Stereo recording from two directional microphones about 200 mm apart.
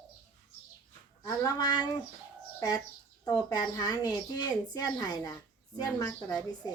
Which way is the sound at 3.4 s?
20° left (ahead or behind).